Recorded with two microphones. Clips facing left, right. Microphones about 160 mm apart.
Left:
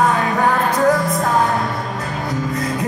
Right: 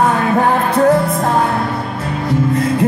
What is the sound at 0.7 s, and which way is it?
Music, 30° right (ahead or behind).